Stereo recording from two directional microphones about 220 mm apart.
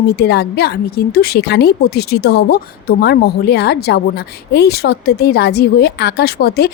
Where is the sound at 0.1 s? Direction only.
45° left (ahead or behind).